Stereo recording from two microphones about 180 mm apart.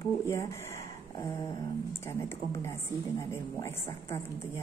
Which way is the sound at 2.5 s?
15° left (ahead or behind).